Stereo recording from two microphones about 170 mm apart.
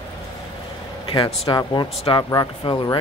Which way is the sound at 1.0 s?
30° left (ahead or behind).